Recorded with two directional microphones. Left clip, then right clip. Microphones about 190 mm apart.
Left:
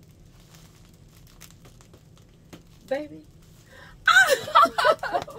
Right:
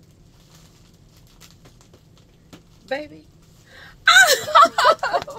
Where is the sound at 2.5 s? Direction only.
20° left (ahead or behind).